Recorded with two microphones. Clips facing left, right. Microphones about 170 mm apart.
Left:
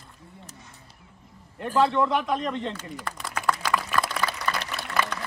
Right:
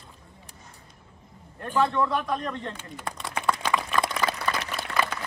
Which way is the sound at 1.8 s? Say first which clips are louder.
Left 2 dB; 20° left (ahead or behind).